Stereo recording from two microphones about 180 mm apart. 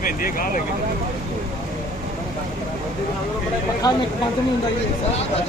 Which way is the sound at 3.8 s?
20° left (ahead or behind).